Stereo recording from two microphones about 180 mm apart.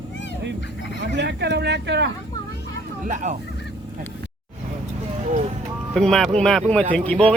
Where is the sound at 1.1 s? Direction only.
75° right (ahead or behind).